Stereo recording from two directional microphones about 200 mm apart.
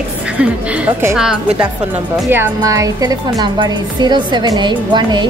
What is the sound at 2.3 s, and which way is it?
A woman's voice, 15° right (ahead or behind).